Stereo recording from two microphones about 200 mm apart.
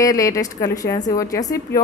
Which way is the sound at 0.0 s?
15° left (ahead or behind).